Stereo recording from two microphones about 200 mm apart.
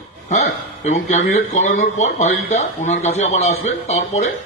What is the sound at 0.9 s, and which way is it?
Speech, 35° left (ahead or behind).